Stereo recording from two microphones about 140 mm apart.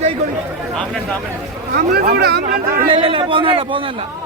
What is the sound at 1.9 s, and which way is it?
Speech, 90° right.